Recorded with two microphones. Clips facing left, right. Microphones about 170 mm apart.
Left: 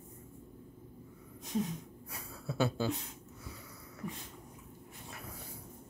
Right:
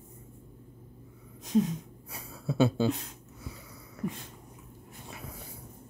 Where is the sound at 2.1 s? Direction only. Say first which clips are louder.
Right 7 dB; 25° right (ahead or behind).